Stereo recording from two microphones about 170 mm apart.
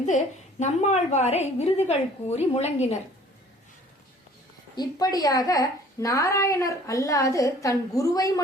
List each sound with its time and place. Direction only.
0.6 s a woman's voice: 45° left (ahead or behind)
4.8 s a woman's voice: 20° left (ahead or behind)